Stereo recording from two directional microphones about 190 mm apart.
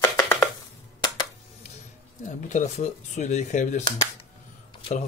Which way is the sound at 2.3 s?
40° left (ahead or behind).